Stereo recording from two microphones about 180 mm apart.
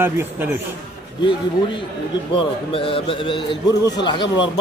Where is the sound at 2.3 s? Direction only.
30° left (ahead or behind).